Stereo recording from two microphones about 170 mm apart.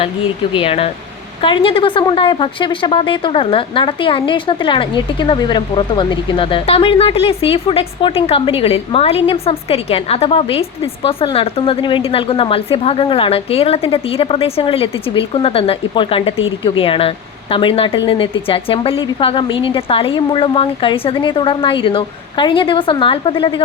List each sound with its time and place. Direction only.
0.5 s a woman's voice: 35° left (ahead or behind)